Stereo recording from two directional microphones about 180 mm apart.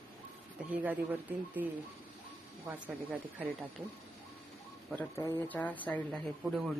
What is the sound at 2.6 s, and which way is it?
Speech, 10° right (ahead or behind).